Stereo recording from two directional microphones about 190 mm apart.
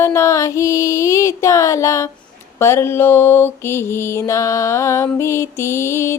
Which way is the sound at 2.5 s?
15° left (ahead or behind).